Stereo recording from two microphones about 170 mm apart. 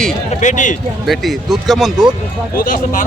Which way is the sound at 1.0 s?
Centre (ahead or behind).